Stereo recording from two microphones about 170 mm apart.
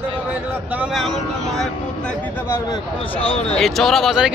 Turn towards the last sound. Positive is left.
turn(degrees=0)  # may be behind; listen again after turning